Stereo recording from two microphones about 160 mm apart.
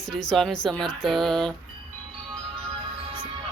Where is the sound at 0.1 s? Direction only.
Centre (ahead or behind).